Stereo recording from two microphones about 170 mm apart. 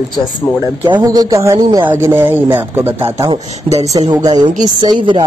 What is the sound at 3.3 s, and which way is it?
Speech, 35° right (ahead or behind).